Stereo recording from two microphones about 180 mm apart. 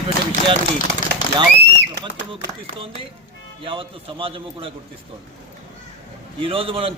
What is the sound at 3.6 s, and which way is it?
A man's voice, 30° right (ahead or behind).